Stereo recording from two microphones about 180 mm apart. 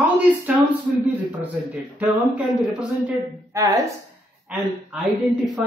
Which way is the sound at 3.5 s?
20° right (ahead or behind).